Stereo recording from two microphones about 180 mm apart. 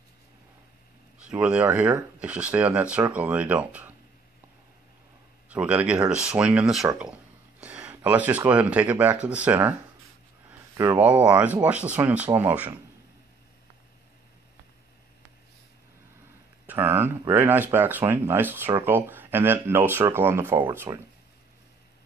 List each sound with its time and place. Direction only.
1.2 s speech: 5° right (ahead or behind)
5.5 s speech: 10° right (ahead or behind)
10.8 s speech: 10° right (ahead or behind)
16.6 s speech: 10° right (ahead or behind)